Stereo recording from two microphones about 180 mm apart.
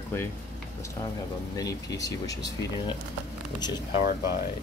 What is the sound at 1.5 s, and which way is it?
Speech, 20° left (ahead or behind).